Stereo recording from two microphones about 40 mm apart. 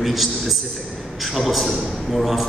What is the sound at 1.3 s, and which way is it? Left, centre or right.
Speech, centre.